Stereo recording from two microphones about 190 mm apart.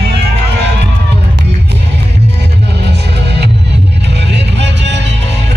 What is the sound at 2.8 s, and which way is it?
Music, 60° right (ahead or behind).